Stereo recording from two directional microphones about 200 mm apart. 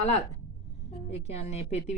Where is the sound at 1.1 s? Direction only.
30° left (ahead or behind).